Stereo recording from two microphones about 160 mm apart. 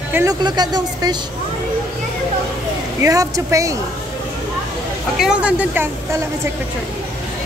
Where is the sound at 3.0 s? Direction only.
20° right (ahead or behind).